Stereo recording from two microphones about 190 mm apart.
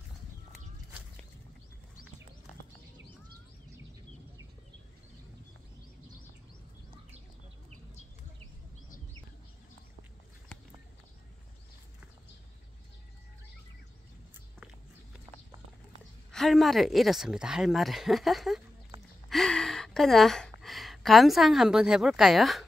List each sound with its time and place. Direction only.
16.3 s speech: centre (ahead or behind)
19.2 s gasp: centre (ahead or behind)
20.6 s a woman's voice: centre (ahead or behind)